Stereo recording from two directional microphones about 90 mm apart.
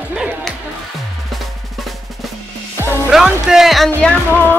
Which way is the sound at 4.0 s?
15° left (ahead or behind).